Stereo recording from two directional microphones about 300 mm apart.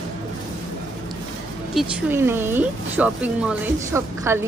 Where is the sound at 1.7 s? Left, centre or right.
Centre.